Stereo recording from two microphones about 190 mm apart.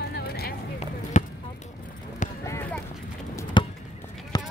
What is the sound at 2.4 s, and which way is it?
Clip-clop, 15° left (ahead or behind).